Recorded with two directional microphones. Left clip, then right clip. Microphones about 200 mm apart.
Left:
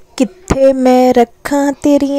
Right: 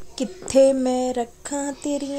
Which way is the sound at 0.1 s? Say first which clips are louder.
Left 5 dB; 40° left (ahead or behind).